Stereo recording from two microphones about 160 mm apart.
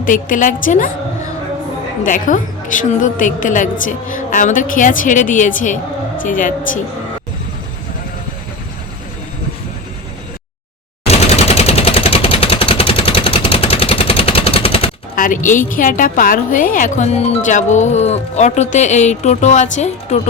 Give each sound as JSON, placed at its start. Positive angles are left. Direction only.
{"t": 0.0, "sound": "a woman's voice", "side_deg": 55}
{"t": 2.0, "sound": "a woman's voice", "side_deg": 55}
{"t": 11.0, "sound": "machine gun", "side_deg": 40}
{"t": 15.1, "sound": "a woman's voice", "side_deg": 55}